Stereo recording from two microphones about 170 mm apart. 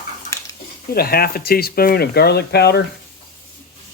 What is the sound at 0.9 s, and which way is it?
Speech, 65° left (ahead or behind).